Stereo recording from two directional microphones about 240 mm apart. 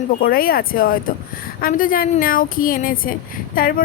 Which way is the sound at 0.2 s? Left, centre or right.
Left.